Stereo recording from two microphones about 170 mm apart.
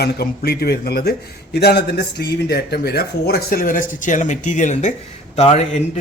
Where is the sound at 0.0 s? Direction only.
65° left (ahead or behind).